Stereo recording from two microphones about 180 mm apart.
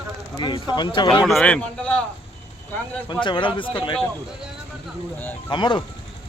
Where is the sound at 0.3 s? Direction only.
25° left (ahead or behind).